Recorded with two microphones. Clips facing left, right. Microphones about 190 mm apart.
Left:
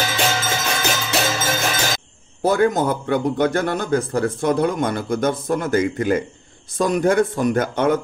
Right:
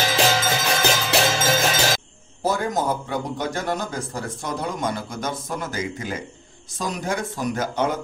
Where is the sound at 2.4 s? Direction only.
60° left (ahead or behind).